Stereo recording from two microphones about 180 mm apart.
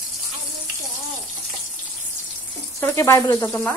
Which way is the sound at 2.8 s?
15° left (ahead or behind).